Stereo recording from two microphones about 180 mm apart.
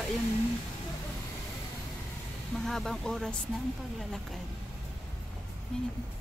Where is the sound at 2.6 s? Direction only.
Centre (ahead or behind).